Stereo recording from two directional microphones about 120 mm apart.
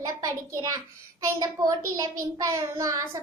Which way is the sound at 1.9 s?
30° right (ahead or behind).